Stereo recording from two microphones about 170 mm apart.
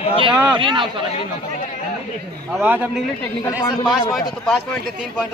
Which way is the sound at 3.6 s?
25° left (ahead or behind).